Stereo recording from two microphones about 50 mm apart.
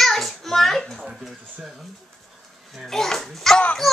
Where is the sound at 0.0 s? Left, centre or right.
Centre.